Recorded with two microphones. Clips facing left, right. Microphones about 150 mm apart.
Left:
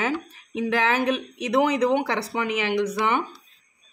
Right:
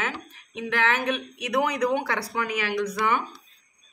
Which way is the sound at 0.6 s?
35° left (ahead or behind).